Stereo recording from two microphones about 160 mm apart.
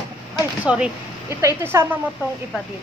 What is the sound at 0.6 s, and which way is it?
Speech, 5° right (ahead or behind).